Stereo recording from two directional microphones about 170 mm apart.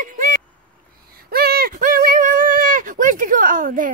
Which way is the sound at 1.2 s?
65° right (ahead or behind).